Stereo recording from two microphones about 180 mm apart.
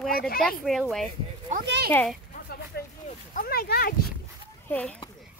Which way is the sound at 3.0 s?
55° left (ahead or behind).